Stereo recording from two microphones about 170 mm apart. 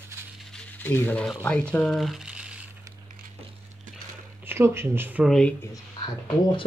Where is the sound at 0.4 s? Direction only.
5° left (ahead or behind).